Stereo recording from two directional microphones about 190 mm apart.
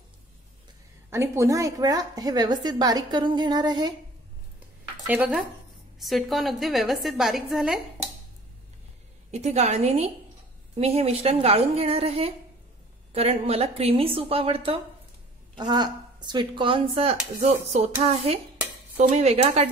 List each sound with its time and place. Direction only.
1.1 s a woman's voice: 15° right (ahead or behind)
5.0 s a woman's voice: 10° right (ahead or behind)
9.3 s a woman's voice: 35° right (ahead or behind)